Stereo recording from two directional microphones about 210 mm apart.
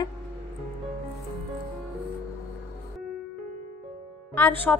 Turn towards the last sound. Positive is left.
turn(degrees=10)  # may be behind; listen again after turning